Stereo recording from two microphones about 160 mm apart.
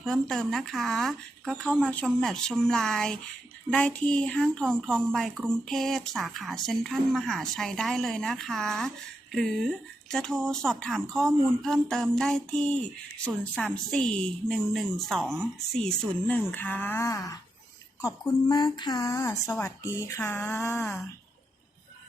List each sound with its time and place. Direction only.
0.0 s speech: centre (ahead or behind)